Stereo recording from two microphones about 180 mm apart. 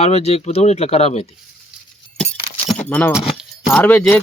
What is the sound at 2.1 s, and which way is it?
Keys jangling, 5° left (ahead or behind).